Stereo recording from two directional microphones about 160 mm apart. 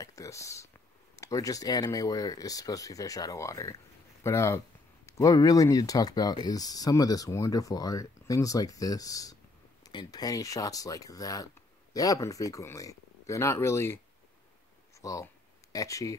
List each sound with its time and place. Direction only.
0.0 s a sound: 20° left (ahead or behind)
1.1 s speech: 20° left (ahead or behind)
15.0 s speech: 20° left (ahead or behind)